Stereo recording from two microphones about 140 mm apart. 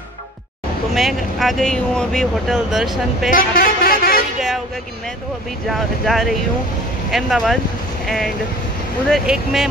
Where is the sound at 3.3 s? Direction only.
90° left.